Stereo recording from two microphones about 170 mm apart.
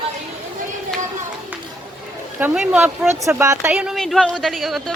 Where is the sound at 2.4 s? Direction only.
5° right (ahead or behind).